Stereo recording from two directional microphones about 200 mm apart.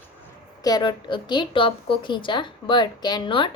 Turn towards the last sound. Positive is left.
turn(degrees=25)  # may be behind; listen again after turning